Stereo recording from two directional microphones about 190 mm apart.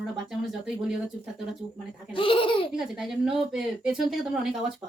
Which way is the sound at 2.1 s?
25° left (ahead or behind).